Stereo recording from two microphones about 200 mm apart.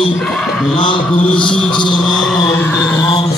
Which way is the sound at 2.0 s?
Centre (ahead or behind).